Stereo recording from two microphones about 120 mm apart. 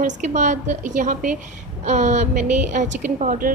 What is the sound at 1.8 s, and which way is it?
A woman's voice, 75° right (ahead or behind).